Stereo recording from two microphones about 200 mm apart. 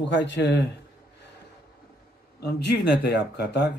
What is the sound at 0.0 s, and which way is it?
Speech, 65° left (ahead or behind).